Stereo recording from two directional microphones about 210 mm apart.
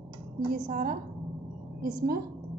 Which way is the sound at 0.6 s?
40° right (ahead or behind).